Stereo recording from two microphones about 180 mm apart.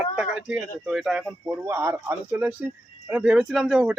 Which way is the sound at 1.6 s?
15° right (ahead or behind).